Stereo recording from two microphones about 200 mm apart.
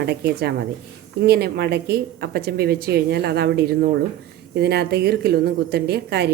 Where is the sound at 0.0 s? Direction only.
55° right (ahead or behind).